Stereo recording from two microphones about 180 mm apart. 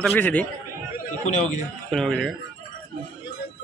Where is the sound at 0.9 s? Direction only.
40° left (ahead or behind).